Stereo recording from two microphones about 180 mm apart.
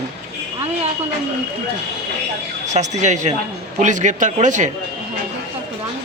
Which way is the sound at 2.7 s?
40° right (ahead or behind).